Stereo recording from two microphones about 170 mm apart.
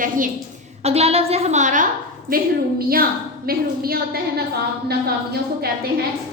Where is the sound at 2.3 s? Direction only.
60° right (ahead or behind).